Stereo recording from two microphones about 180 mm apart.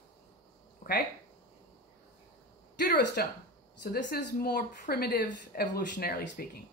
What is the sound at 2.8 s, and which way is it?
Speech, 60° left (ahead or behind).